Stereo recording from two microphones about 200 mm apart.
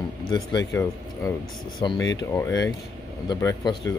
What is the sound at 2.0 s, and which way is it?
Speech, 65° left (ahead or behind).